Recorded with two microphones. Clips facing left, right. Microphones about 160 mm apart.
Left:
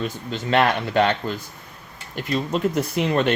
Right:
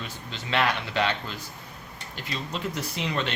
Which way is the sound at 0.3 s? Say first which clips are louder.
Left 6 dB; 50° left (ahead or behind).